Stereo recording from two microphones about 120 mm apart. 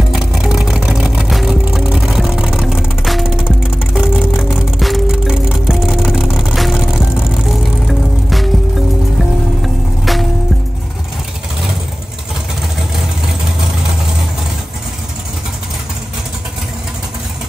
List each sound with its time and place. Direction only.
0.1 s vehicle: 5° right (ahead or behind)